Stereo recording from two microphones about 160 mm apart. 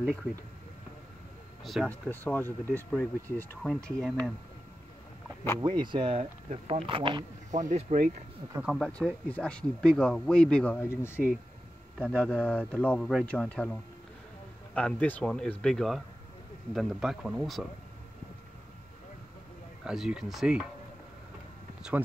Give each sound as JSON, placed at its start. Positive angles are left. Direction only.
{"t": 1.6, "sound": "speech", "side_deg": 0}
{"t": 1.9, "sound": "speech", "side_deg": 10}
{"t": 5.6, "sound": "speech", "side_deg": -30}
{"t": 7.5, "sound": "speech", "side_deg": -50}
{"t": 8.7, "sound": "speech", "side_deg": 5}
{"t": 19.8, "sound": "speech", "side_deg": -5}